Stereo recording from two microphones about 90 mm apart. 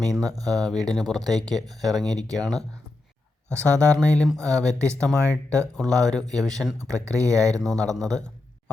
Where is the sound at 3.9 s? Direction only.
10° left (ahead or behind).